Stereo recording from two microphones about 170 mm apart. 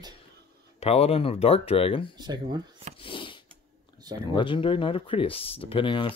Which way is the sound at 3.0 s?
30° left (ahead or behind).